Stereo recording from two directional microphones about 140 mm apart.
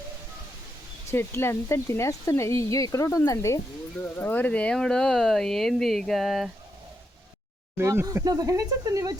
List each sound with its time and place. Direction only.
1.1 s speech: 15° left (ahead or behind); by 6.5 s centre (ahead or behind)
7.8 s speech: 20° right (ahead or behind)